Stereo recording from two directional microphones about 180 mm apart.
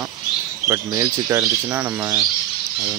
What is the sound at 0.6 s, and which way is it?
Speech, 15° right (ahead or behind).